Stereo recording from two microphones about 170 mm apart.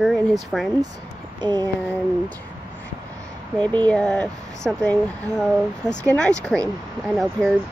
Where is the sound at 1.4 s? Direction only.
25° right (ahead or behind).